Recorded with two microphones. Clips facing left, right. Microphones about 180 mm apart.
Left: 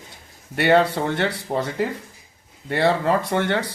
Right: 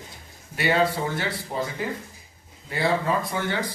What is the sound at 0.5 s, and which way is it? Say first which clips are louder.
Speech: left 5 dB; 65° left (ahead or behind).